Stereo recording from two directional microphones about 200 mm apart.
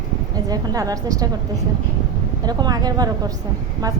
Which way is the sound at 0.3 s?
20° right (ahead or behind).